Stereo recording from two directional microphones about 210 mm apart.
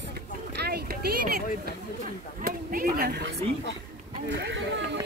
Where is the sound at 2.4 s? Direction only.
45° right (ahead or behind).